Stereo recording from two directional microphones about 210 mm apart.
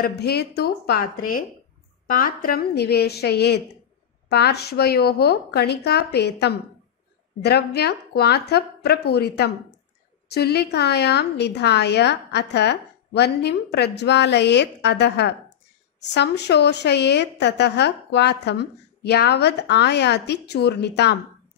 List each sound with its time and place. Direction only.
0.0 s a woman's voice: 50° left (ahead or behind)